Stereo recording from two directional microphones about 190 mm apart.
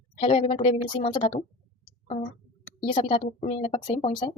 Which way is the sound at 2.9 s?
25° left (ahead or behind).